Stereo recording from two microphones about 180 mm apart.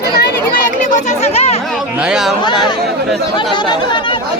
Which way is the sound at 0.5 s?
45° left (ahead or behind).